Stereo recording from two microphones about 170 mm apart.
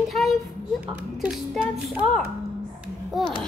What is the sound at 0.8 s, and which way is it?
Speech, 5° right (ahead or behind).